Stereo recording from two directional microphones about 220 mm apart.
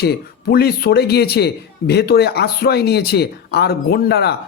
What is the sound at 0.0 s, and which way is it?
Speech, 45° left (ahead or behind).